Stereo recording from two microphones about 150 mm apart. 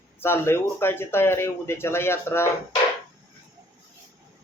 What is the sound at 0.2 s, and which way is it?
Speech, 15° left (ahead or behind).